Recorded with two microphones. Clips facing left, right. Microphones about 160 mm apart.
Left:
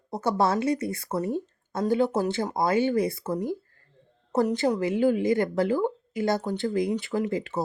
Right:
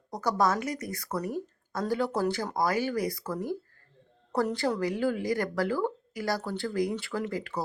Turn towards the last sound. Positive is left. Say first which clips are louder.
# left 5 dB
turn(degrees=20)  # may be behind; listen again after turning